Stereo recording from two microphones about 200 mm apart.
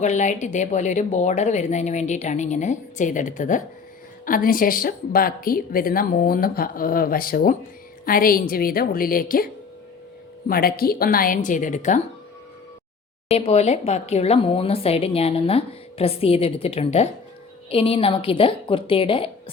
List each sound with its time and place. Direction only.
0.0 s a woman's voice: 35° left (ahead or behind)
13.3 s speech: 30° left (ahead or behind)